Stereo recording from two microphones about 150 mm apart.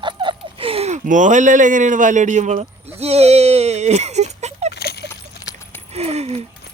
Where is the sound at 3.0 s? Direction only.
45° right (ahead or behind).